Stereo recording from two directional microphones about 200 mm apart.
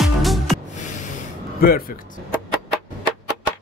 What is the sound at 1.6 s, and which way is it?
Speech, 50° left (ahead or behind).